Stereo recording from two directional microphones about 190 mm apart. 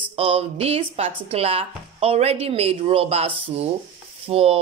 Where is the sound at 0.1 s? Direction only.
30° right (ahead or behind).